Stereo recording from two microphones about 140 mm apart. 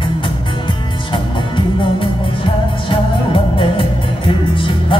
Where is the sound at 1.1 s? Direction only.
35° left (ahead or behind).